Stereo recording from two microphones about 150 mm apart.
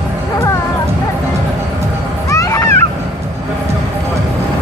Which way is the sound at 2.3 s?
20° left (ahead or behind).